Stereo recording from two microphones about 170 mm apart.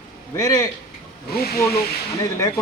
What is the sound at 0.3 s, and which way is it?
Speech, 20° left (ahead or behind).